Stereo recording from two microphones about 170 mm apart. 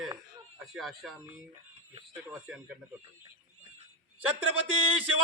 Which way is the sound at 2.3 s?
10° right (ahead or behind).